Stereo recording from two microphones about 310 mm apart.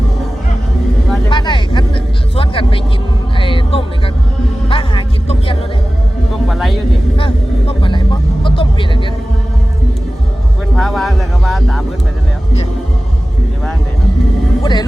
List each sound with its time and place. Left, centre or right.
1.3 s vehicle: centre
2.3 s a sound: centre
3.3 s music: centre
6.5 s a sound: centre
7.2 s vehicle: centre
10.8 s music: centre
14.6 s vehicle: centre